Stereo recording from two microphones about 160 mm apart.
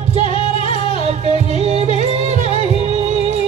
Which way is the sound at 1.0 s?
45° right (ahead or behind).